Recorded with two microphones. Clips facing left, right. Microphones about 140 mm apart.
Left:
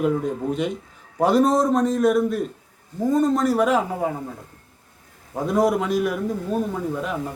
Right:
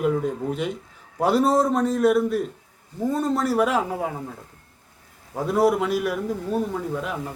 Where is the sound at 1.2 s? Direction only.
5° right (ahead or behind).